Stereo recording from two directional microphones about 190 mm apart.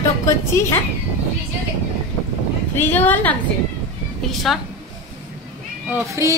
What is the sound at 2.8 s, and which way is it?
A woman's voice, 10° left (ahead or behind).